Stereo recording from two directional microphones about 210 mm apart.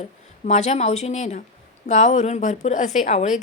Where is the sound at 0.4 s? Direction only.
30° left (ahead or behind).